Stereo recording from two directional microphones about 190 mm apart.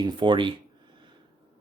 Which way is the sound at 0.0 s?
25° right (ahead or behind).